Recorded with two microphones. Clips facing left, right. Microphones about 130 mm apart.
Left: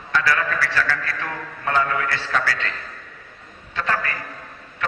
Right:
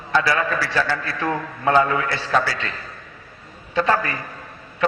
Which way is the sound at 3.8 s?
20° right (ahead or behind).